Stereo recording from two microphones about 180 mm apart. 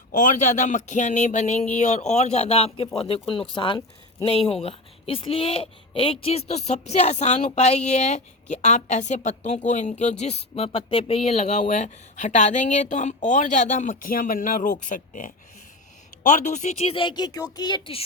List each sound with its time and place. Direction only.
0.1 s a woman's voice: 45° left (ahead or behind); by 18.0 s 25° left (ahead or behind)